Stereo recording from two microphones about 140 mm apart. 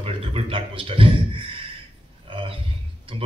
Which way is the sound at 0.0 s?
40° right (ahead or behind).